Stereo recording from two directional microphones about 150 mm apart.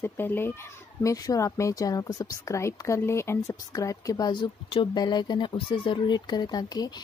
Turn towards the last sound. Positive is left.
turn(degrees=25)  # may be behind; listen again after turning